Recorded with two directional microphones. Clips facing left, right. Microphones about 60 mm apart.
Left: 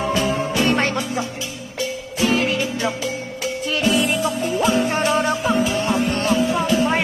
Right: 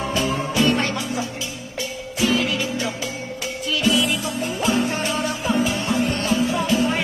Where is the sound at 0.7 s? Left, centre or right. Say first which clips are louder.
Left 2 dB; left.